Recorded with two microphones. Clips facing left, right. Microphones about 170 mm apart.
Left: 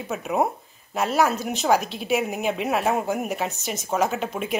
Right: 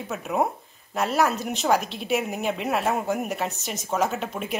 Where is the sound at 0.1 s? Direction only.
Centre (ahead or behind).